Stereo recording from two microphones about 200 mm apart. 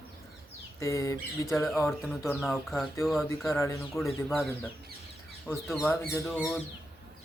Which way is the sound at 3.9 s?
Centre (ahead or behind).